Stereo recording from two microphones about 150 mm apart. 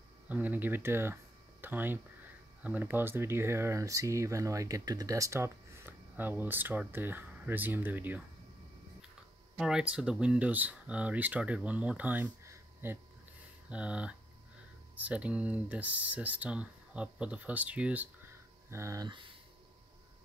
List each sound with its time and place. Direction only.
0.3 s speech: 10° right (ahead or behind)
9.6 s speech: 5° right (ahead or behind)
19.0 s speech: 30° right (ahead or behind)